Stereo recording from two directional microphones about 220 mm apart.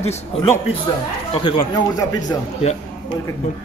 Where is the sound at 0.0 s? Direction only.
30° left (ahead or behind).